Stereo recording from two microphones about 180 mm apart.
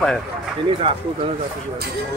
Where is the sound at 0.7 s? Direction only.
30° right (ahead or behind).